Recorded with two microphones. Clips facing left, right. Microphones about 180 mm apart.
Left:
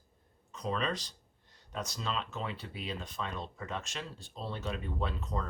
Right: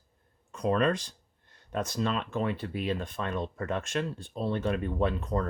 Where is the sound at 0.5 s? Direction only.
55° right (ahead or behind).